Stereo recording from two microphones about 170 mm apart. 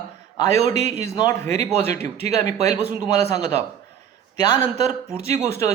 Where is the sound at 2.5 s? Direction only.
40° right (ahead or behind).